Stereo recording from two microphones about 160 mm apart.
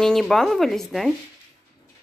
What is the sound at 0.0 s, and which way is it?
A woman's voice, centre (ahead or behind).